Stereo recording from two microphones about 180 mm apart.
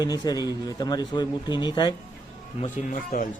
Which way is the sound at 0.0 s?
20° left (ahead or behind).